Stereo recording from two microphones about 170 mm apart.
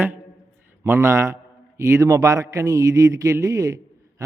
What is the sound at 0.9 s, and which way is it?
A man's voice, 15° right (ahead or behind).